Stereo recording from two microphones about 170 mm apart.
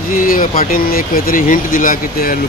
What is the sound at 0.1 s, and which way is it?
Speech, 55° left (ahead or behind).